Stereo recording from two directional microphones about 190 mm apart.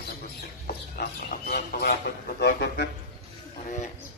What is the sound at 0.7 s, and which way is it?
Chicken, 55° left (ahead or behind).